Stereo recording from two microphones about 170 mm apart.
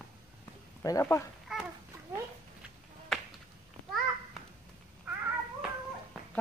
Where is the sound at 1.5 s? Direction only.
Centre (ahead or behind).